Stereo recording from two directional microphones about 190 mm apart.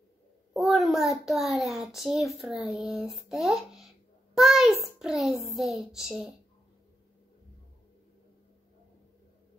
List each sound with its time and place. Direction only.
0.5 s a child's voice: centre (ahead or behind)